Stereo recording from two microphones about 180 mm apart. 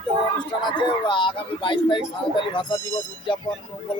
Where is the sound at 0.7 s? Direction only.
25° left (ahead or behind).